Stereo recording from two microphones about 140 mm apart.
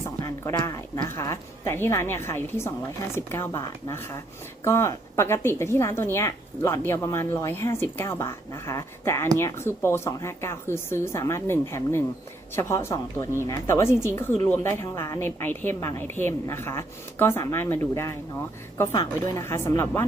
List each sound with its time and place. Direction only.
0.2 s a woman's voice: 25° left (ahead or behind)